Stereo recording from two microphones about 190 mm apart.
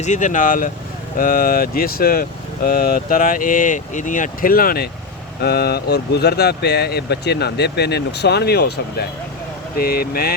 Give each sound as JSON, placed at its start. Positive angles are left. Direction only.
{"t": 0.0, "sound": "speech", "side_deg": 40}